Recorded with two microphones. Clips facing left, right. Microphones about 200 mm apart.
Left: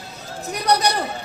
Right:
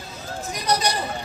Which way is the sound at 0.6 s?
65° left (ahead or behind).